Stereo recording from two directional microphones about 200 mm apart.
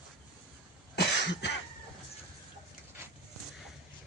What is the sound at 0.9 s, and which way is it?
Cough, 60° left (ahead or behind).